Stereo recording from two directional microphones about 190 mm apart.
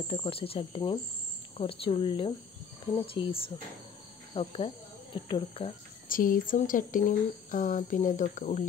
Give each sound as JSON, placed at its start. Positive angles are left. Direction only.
{"t": 0.1, "sound": "speech", "side_deg": 30}
{"t": 6.0, "sound": "speech", "side_deg": 45}